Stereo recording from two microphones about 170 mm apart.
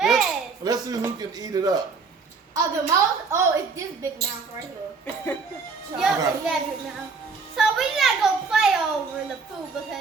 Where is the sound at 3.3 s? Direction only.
20° right (ahead or behind).